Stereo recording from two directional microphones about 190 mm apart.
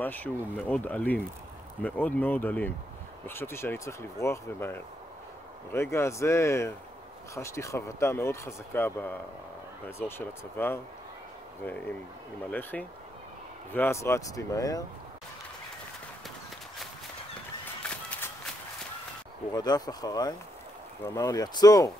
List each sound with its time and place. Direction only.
0.0 s speech: 10° left (ahead or behind)
17.8 s walk: 5° left (ahead or behind)
19.5 s speech: 20° left (ahead or behind)